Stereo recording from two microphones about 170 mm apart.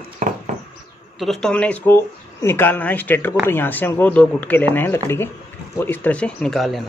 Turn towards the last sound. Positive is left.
turn(degrees=0)  # may be behind; listen again after turning